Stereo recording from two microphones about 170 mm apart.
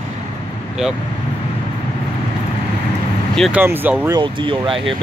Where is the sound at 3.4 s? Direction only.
10° right (ahead or behind).